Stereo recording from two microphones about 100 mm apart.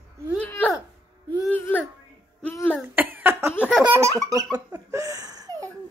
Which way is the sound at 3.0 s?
20° right (ahead or behind).